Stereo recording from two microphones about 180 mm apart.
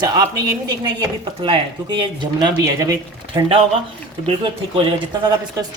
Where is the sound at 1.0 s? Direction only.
25° right (ahead or behind).